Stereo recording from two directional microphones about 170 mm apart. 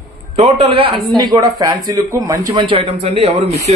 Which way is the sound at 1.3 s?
20° right (ahead or behind).